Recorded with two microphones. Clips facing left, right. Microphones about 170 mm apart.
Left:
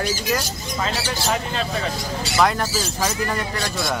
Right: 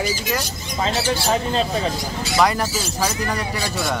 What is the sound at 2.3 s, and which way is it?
Speech, centre (ahead or behind).